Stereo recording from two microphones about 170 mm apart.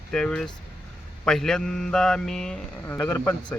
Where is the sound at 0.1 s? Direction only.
5° left (ahead or behind).